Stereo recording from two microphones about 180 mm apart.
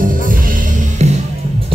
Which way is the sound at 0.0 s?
50° right (ahead or behind).